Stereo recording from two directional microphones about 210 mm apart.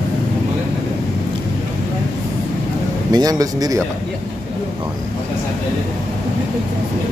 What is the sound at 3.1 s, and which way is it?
Speech, 20° right (ahead or behind).